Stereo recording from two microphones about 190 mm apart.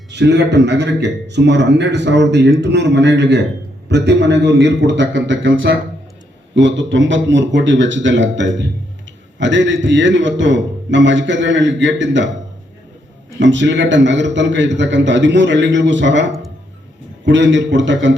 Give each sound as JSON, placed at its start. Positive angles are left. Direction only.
{"t": 0.1, "sound": "a man's voice", "side_deg": -65}
{"t": 13.4, "sound": "a man's voice", "side_deg": -70}